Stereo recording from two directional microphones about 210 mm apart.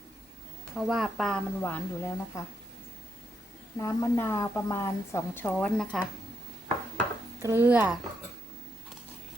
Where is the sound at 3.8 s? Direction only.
15° left (ahead or behind).